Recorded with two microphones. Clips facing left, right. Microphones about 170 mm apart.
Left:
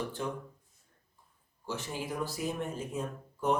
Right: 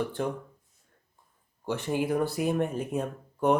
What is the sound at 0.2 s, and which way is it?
Speech, 55° right (ahead or behind).